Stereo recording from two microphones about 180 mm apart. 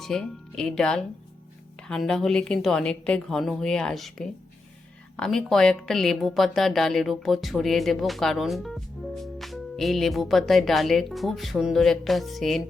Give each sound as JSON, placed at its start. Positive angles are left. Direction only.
{"t": 0.0, "sound": "speech", "side_deg": 5}